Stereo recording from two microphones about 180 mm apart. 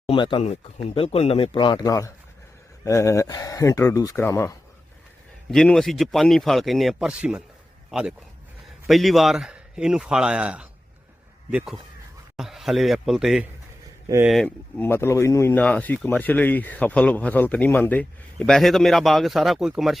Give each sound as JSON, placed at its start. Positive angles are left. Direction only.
{"t": 0.1, "sound": "speech", "side_deg": 30}
{"t": 5.5, "sound": "speech", "side_deg": 0}